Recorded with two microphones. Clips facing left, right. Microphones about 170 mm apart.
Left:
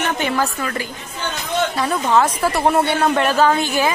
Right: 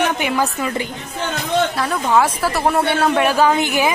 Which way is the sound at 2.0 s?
5° right (ahead or behind).